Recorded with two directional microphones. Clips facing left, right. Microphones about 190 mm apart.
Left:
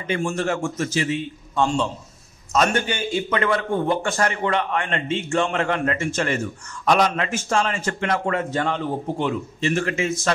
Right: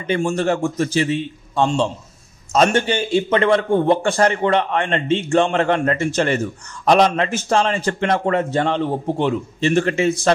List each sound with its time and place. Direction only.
0.0 s a man's voice: 35° right (ahead or behind)